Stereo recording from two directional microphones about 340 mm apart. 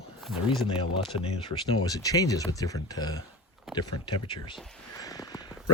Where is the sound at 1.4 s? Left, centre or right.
Centre.